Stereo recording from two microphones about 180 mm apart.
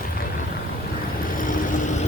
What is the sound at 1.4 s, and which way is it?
Vehicle, 50° left (ahead or behind).